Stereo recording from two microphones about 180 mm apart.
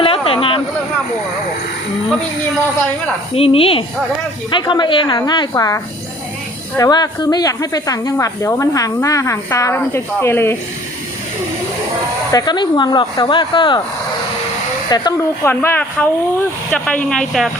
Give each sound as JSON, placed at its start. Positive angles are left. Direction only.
{"t": 0.0, "sound": "a sound", "side_deg": 30}
{"t": 3.3, "sound": "a woman's voice", "side_deg": 30}
{"t": 12.3, "sound": "speech", "side_deg": 20}
{"t": 14.8, "sound": "speech", "side_deg": 20}